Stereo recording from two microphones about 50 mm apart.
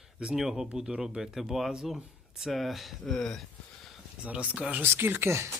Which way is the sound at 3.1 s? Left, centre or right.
Centre.